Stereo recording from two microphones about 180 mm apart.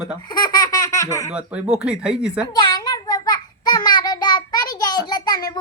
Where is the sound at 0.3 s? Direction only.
20° left (ahead or behind).